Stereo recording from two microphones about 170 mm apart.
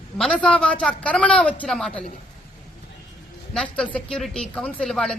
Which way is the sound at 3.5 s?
5° left (ahead or behind).